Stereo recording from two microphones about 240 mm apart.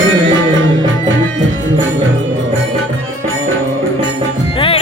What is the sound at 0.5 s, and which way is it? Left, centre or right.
Music, right.